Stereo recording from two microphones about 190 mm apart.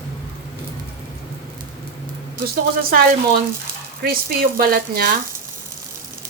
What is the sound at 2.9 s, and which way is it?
Speech, 50° right (ahead or behind).